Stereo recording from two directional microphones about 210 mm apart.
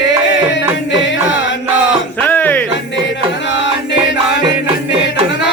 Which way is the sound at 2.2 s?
10° left (ahead or behind).